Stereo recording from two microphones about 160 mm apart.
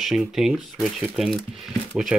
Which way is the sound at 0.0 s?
Centre (ahead or behind).